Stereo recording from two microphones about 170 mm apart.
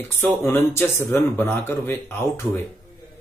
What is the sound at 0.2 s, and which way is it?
Speech, 15° left (ahead or behind).